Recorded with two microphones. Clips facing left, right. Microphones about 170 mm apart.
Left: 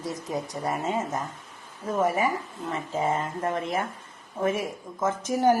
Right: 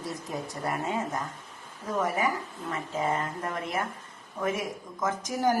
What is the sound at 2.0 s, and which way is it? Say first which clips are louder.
Speech: left 4 dB; 25° left (ahead or behind).